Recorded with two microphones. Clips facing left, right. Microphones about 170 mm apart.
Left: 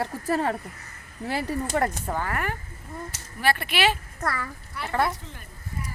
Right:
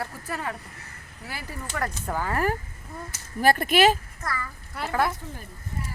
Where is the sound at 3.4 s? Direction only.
45° right (ahead or behind).